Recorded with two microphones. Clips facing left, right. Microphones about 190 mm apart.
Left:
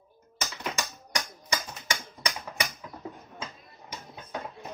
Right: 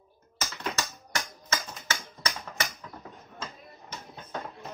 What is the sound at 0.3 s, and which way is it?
Typing, 15° left (ahead or behind).